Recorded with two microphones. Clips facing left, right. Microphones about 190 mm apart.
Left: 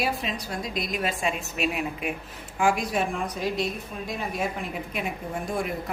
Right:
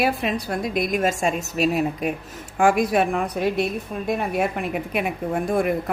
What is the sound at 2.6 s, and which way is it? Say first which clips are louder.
A woman's voice: right 6 dB; 55° right (ahead or behind).